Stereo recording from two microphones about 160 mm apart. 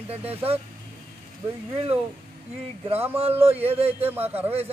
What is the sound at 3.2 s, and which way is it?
Speech, 40° right (ahead or behind).